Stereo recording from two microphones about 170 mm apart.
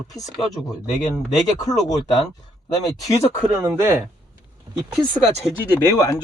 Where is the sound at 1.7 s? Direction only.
20° left (ahead or behind).